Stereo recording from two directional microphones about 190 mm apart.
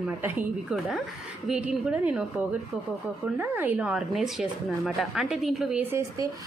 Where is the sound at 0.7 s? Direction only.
Centre (ahead or behind).